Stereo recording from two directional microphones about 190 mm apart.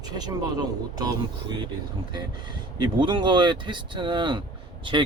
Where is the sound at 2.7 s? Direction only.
25° right (ahead or behind).